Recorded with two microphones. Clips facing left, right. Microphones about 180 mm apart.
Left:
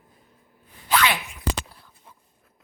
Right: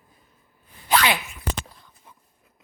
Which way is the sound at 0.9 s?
15° right (ahead or behind).